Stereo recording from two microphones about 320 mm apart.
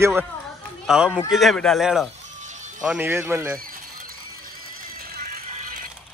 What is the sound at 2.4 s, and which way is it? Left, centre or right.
Music, right.